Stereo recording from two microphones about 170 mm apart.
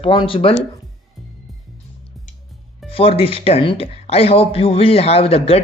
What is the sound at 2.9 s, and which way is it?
Speech, 35° left (ahead or behind).